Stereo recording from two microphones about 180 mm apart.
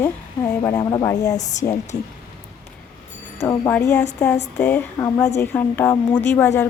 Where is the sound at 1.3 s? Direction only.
40° left (ahead or behind).